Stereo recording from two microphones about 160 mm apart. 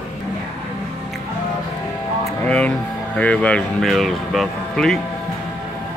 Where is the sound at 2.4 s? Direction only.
10° left (ahead or behind).